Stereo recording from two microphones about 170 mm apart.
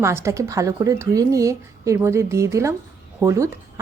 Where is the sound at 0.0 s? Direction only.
15° right (ahead or behind).